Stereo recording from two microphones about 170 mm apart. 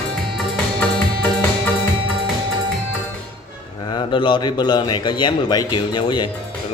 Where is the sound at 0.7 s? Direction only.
10° left (ahead or behind).